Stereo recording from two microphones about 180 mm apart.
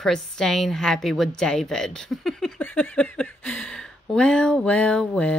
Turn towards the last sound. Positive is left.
turn(degrees=5)  # may be behind; listen again after turning